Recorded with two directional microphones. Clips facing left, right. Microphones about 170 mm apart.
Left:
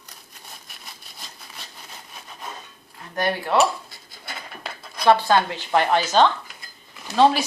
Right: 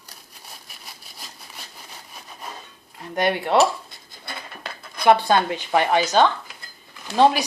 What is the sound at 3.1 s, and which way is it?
Speech, 20° right (ahead or behind).